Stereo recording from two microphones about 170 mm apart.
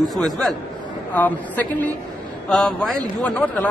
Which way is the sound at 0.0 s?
Centre (ahead or behind).